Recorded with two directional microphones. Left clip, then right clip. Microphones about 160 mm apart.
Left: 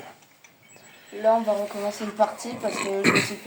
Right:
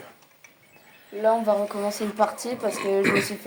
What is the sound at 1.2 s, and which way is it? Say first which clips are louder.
A woman's voice: even; 70° right (ahead or behind).